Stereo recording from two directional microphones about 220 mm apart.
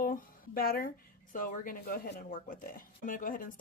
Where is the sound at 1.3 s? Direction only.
40° left (ahead or behind).